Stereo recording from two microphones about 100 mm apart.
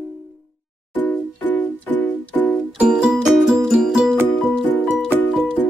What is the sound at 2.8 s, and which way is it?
Music, 5° right (ahead or behind).